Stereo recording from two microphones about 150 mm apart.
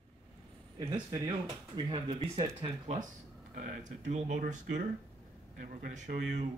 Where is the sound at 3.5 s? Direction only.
55° right (ahead or behind).